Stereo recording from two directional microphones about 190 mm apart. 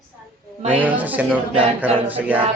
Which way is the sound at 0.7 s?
10° right (ahead or behind).